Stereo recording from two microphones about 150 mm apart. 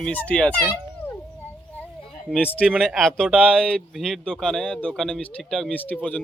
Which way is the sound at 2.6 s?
Centre (ahead or behind).